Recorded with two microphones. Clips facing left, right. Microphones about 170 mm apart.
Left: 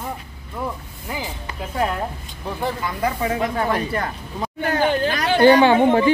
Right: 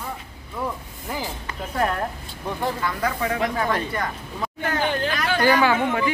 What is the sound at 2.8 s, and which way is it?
Speech, 20° left (ahead or behind).